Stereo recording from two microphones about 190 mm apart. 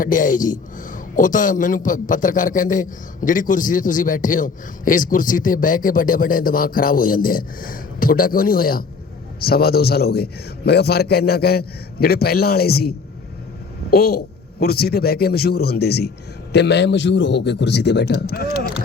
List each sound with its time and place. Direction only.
0.0 s a man's voice: 45° left (ahead or behind)
13.9 s a man's voice: 55° left (ahead or behind)